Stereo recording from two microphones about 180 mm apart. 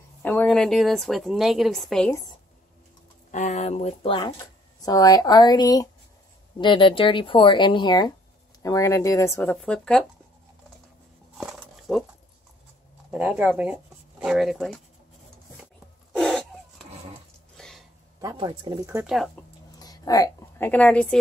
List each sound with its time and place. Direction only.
0.2 s a woman's voice: 10° left (ahead or behind)
3.3 s speech: 40° left (ahead or behind); by 10.0 s 5° left (ahead or behind)
11.3 s a sound: 5° right (ahead or behind)
13.1 s a woman's voice: 5° right (ahead or behind)
16.1 s a sound: 5° left (ahead or behind)
17.6 s throat clearing: centre (ahead or behind)
18.2 s speech: 20° right (ahead or behind)
18.9 s speech: 10° right (ahead or behind)
19.4 s a sound: 10° left (ahead or behind)
19.8 s a woman's voice: 20° left (ahead or behind)